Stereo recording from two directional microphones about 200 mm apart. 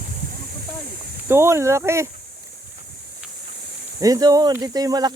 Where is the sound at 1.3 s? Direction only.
15° right (ahead or behind).